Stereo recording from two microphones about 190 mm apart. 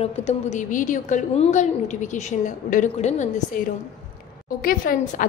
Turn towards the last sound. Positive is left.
turn(degrees=50)  # may be behind; listen again after turning